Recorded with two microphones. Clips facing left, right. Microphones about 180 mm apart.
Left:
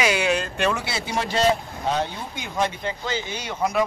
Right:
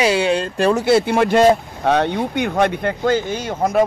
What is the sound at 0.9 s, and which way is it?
Speech, 55° right (ahead or behind).